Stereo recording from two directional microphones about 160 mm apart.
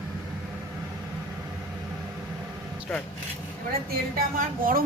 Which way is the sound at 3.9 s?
65° right (ahead or behind).